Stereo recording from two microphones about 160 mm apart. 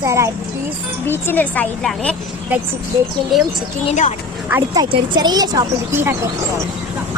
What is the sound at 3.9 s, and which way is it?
Speech, 45° left (ahead or behind).